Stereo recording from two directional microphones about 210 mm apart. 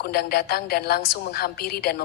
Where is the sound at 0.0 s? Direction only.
45° left (ahead or behind).